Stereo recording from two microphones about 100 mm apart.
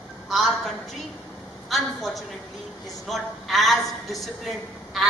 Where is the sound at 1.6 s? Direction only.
Centre (ahead or behind).